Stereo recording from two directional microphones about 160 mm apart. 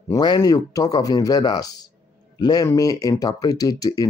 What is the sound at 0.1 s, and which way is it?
A man's voice, 25° left (ahead or behind).